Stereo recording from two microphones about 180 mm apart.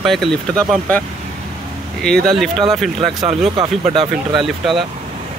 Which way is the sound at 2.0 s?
5° left (ahead or behind).